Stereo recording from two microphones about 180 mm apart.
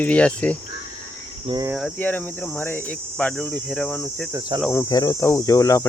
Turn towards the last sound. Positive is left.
turn(degrees=15)  # may be behind; listen again after turning